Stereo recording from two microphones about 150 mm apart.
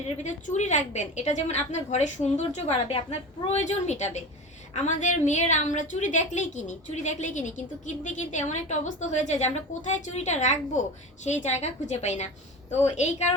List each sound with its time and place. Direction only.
0.2 s a woman's voice: 50° left (ahead or behind)